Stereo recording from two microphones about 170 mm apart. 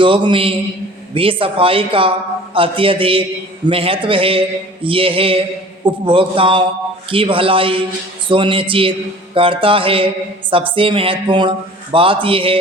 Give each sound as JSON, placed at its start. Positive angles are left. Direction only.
{"t": 0.0, "sound": "a man's voice", "side_deg": -30}